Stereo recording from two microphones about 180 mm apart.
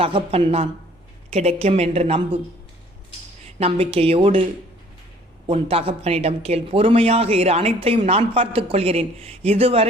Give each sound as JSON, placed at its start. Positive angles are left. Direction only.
{"t": 0.0, "sound": "speech", "side_deg": -30}
{"t": 3.6, "sound": "speech", "side_deg": -30}
{"t": 5.5, "sound": "speech", "side_deg": -30}